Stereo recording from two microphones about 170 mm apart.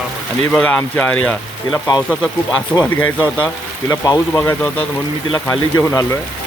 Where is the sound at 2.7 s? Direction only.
5° left (ahead or behind).